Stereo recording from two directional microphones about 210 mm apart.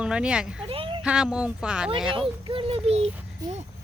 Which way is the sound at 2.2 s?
25° right (ahead or behind).